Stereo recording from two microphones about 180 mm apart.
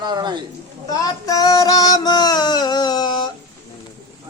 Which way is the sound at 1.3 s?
20° left (ahead or behind).